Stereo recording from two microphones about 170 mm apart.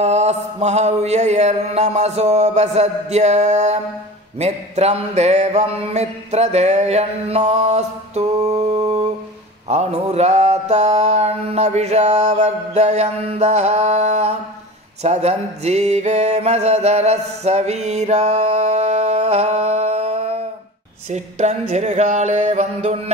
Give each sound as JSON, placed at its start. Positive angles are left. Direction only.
{"t": 0.0, "sound": "mantra", "side_deg": -40}